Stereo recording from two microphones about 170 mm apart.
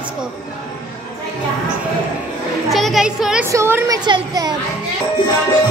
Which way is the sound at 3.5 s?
15° right (ahead or behind).